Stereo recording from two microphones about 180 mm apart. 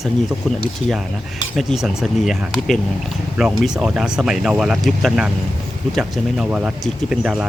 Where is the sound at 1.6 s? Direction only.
Centre (ahead or behind).